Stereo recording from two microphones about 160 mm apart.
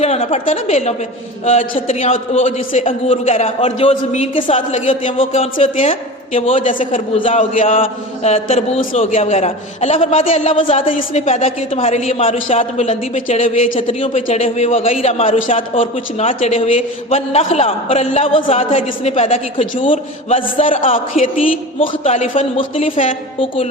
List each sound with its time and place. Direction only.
0.0 s a woman's voice: 40° left (ahead or behind)
4.5 s a woman's voice: 50° left (ahead or behind)